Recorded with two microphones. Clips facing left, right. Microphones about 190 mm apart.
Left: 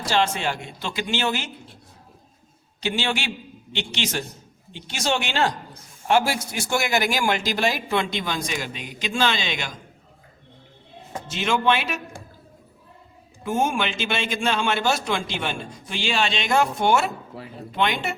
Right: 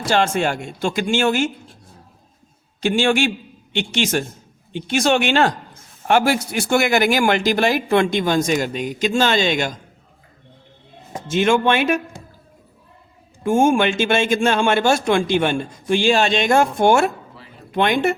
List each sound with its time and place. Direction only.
0.0 s speech: 50° right (ahead or behind)
2.8 s speech: 50° right (ahead or behind)
11.3 s speech: 50° right (ahead or behind)
13.4 s speech: 50° right (ahead or behind)